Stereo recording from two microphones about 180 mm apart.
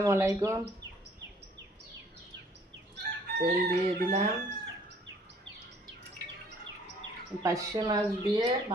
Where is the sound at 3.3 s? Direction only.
60° right (ahead or behind).